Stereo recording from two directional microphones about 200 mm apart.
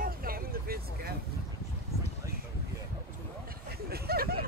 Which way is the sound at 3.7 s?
50° right (ahead or behind).